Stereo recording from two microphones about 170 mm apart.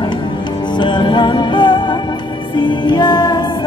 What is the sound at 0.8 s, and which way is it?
Music, 25° left (ahead or behind).